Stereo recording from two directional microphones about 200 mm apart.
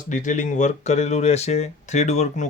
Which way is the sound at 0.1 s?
40° left (ahead or behind).